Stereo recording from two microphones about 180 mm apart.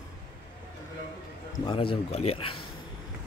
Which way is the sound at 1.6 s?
30° left (ahead or behind).